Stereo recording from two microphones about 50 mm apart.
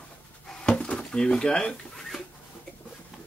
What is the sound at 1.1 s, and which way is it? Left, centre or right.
Speech, centre.